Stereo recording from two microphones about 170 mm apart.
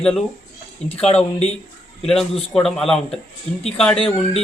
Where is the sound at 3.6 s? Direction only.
40° left (ahead or behind).